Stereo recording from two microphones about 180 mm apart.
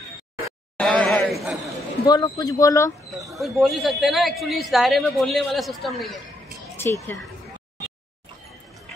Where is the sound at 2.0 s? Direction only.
20° left (ahead or behind).